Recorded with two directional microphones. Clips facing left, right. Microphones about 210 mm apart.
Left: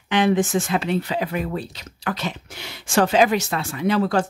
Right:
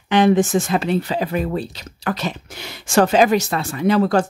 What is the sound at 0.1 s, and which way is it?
Speech, 40° right (ahead or behind).